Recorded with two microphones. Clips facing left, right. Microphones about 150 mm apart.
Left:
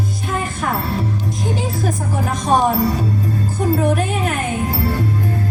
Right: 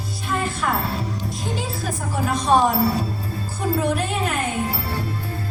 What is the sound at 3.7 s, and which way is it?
Music, 45° left (ahead or behind).